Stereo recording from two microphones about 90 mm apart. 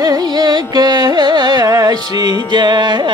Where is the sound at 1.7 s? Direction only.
45° right (ahead or behind).